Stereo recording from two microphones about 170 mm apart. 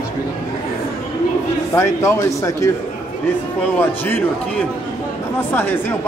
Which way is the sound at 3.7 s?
10° left (ahead or behind).